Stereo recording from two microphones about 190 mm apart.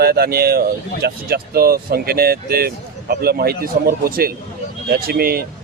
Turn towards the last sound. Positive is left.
turn(degrees=-55)  # may be behind; listen again after turning